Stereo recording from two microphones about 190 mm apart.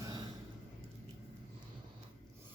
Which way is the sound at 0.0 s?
20° right (ahead or behind).